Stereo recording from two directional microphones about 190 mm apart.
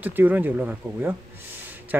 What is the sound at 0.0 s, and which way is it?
Speech, 10° right (ahead or behind).